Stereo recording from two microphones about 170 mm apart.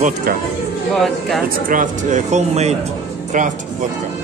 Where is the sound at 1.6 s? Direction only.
50° right (ahead or behind).